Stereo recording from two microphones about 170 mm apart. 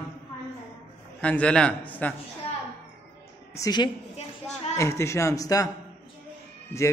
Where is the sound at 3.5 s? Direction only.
20° left (ahead or behind).